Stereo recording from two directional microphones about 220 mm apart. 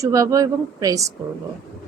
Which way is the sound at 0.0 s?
15° right (ahead or behind).